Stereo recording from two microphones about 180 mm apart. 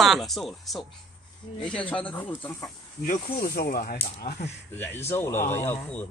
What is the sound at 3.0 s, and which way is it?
Speech, 50° left (ahead or behind).